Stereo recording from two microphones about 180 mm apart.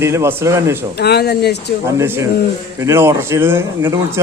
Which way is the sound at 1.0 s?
60° left (ahead or behind).